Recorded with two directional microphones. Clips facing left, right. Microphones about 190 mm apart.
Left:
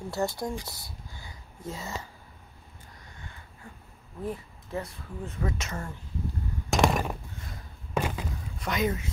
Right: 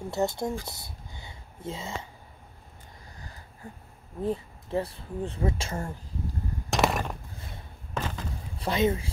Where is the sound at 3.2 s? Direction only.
35° right (ahead or behind).